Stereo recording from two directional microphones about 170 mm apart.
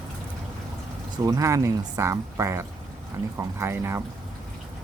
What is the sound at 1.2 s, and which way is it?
Speech, 20° right (ahead or behind).